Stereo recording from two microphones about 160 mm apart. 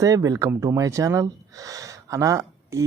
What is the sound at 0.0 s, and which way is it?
Speech, 20° right (ahead or behind).